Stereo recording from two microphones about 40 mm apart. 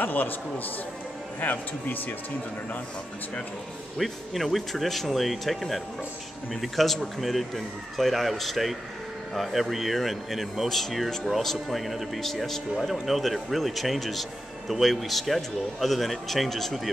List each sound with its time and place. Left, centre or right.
0.0 s speech: left
1.4 s speech: left
4.0 s a man's voice: centre
12.7 s a man's voice: centre